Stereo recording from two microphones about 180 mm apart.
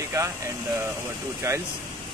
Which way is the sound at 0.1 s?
15° right (ahead or behind).